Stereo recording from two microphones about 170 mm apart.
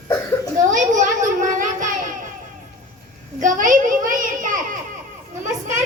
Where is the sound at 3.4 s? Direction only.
50° right (ahead or behind).